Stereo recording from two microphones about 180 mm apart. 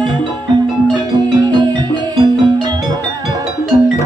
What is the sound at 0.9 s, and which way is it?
Music, 25° right (ahead or behind).